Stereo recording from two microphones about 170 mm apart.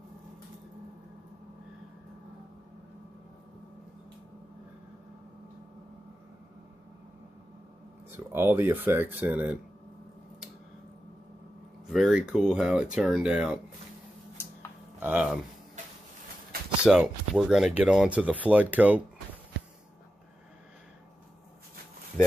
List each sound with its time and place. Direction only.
8.3 s speech: 15° right (ahead or behind)
11.9 s speech: 5° right (ahead or behind)
15.0 s speech: 10° right (ahead or behind)
16.8 s speech: 5° right (ahead or behind)